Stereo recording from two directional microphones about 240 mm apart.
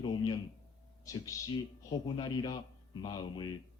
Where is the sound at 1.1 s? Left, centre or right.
Centre.